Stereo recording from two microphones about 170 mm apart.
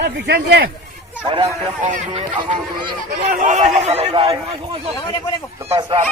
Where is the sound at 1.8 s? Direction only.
45° right (ahead or behind).